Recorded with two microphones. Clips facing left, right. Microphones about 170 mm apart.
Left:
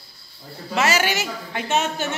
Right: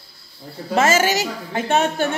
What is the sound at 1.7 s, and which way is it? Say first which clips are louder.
Speech: right 4 dB; 55° right (ahead or behind).